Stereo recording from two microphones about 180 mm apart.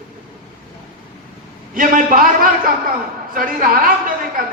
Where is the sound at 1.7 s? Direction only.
50° right (ahead or behind).